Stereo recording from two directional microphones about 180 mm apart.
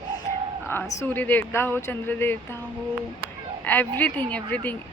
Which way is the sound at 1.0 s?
10° left (ahead or behind).